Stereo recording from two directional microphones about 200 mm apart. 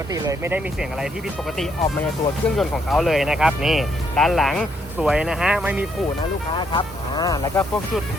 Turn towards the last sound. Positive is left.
turn(degrees=20)  # may be behind; listen again after turning